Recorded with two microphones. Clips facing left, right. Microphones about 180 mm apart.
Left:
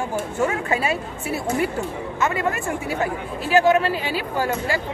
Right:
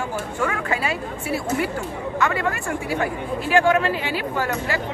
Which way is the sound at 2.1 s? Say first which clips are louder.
Even; 20° left (ahead or behind).